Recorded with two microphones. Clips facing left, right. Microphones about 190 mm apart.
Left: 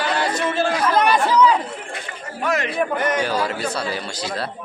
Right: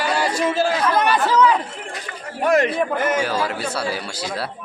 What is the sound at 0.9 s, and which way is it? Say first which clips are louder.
Speech: left 2 dB; 15° left (ahead or behind).